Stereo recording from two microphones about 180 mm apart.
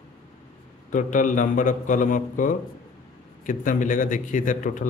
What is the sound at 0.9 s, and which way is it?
A man's voice, 45° left (ahead or behind).